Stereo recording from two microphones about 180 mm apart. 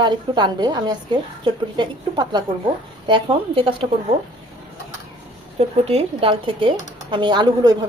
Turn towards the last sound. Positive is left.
turn(degrees=-25)  # may be behind; listen again after turning